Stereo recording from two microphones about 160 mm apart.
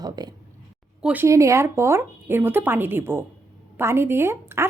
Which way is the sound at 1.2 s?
20° right (ahead or behind).